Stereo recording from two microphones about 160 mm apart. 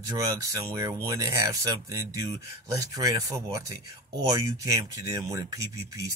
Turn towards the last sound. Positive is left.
turn(degrees=-20)  # may be behind; listen again after turning